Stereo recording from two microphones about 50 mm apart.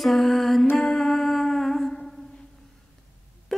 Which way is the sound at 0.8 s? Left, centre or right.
Centre.